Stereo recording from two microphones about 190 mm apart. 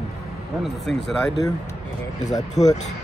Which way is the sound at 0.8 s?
65° left (ahead or behind).